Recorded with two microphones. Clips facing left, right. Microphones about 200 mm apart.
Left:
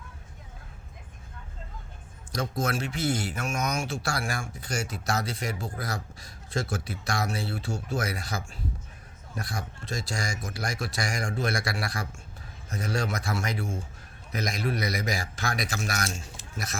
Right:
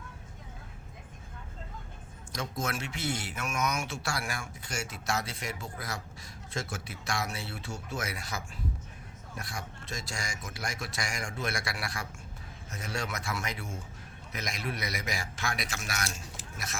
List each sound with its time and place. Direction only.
2.3 s a man's voice: 35° left (ahead or behind)